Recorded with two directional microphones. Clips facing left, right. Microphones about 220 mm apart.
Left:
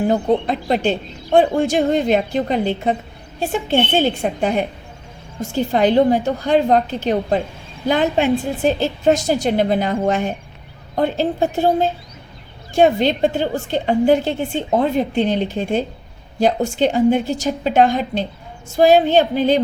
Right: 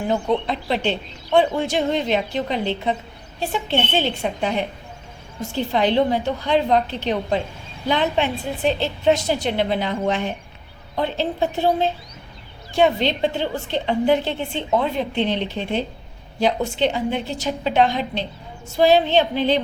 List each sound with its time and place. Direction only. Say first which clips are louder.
0.1 s a woman's voice: left 4 dB; 45° left (ahead or behind)